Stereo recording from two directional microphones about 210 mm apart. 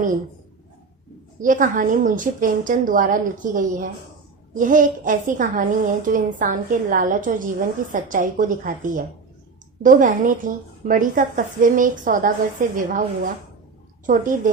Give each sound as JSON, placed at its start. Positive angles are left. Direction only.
{"t": 1.4, "sound": "a woman's voice", "side_deg": -40}